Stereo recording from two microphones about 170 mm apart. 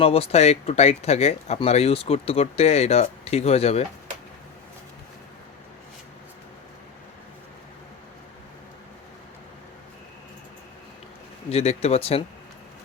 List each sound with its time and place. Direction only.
0.0 s speech: 35° left (ahead or behind)
11.4 s speech: 40° left (ahead or behind)